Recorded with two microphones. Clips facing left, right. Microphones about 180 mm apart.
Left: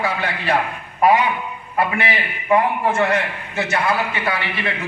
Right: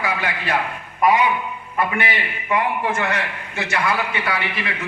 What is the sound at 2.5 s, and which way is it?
A man's voice, 30° left (ahead or behind).